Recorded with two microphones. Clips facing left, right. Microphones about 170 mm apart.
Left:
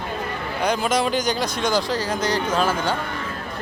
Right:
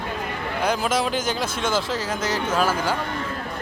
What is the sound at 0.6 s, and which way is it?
Speech, 5° right (ahead or behind).